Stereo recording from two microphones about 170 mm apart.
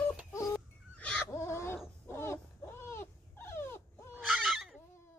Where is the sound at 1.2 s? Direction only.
15° left (ahead or behind).